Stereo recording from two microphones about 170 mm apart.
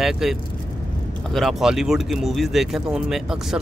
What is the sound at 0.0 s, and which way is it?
Speech, centre (ahead or behind).